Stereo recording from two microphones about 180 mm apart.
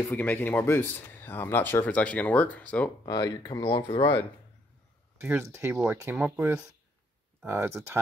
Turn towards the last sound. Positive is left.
turn(degrees=-15)  # may be behind; listen again after turning